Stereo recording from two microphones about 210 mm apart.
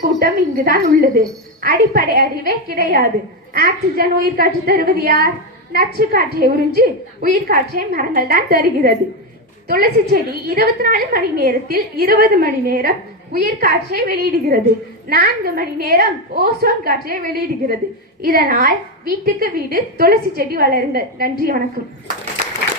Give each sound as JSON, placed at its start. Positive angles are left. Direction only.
{"t": 0.0, "sound": "a woman's voice", "side_deg": -45}